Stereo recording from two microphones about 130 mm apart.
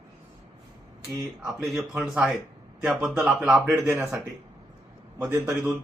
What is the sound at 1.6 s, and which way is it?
Speech, centre (ahead or behind).